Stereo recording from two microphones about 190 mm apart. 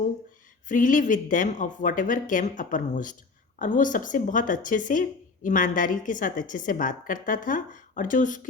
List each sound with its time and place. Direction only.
0.7 s speech: 45° left (ahead or behind)